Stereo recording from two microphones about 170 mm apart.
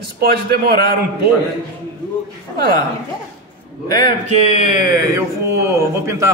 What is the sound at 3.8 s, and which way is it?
Speech, 25° left (ahead or behind).